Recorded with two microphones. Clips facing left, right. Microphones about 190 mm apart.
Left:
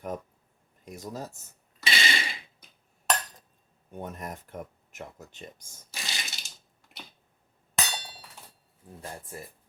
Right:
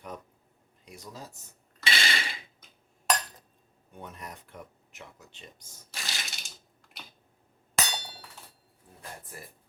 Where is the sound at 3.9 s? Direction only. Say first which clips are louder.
Left 6 dB; 45° left (ahead or behind).